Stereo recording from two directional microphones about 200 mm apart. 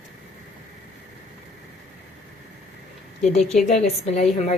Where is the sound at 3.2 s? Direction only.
35° left (ahead or behind).